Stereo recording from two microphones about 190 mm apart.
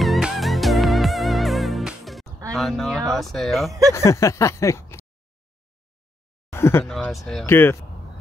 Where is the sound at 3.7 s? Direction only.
20° right (ahead or behind).